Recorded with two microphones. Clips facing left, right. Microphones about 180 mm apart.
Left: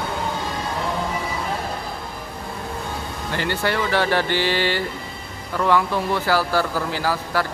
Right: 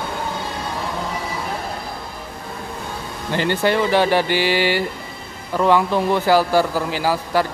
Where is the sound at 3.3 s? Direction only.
20° right (ahead or behind).